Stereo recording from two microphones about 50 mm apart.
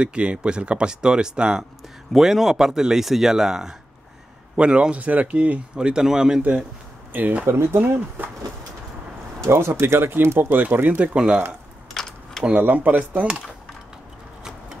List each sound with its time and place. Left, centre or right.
0.0 s speech: right
2.1 s speech: centre
4.6 s speech: right
7.1 s speech: right
7.4 s speech: right
9.5 s speech: right
9.9 s speech: right
10.5 s speech: right
11.9 s camera: centre
12.5 s speech: right